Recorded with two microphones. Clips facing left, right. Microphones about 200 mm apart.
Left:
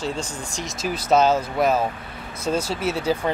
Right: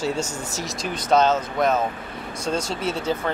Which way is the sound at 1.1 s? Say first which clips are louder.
Left 1 dB; 10° left (ahead or behind).